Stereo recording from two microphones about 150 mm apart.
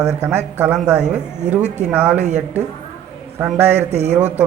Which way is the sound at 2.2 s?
50° right (ahead or behind).